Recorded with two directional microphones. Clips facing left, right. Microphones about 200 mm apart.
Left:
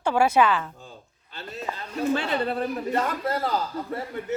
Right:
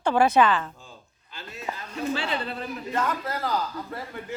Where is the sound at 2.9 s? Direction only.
30° left (ahead or behind).